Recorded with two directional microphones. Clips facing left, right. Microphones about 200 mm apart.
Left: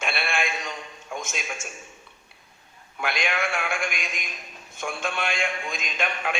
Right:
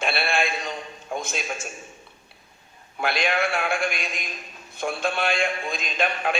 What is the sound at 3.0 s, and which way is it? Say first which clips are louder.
A man's voice: right 4 dB; 35° right (ahead or behind).